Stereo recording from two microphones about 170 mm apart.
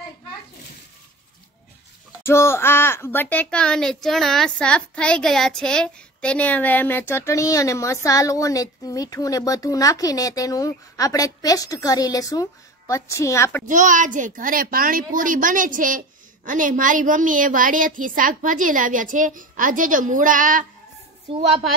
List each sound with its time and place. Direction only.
2.2 s speech: 15° left (ahead or behind)
13.7 s a woman's voice: 50° right (ahead or behind)